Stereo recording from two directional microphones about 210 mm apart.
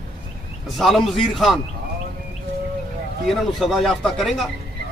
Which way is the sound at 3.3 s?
Centre (ahead or behind).